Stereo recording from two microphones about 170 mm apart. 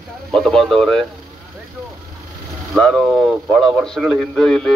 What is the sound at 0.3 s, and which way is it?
Speech, 5° left (ahead or behind).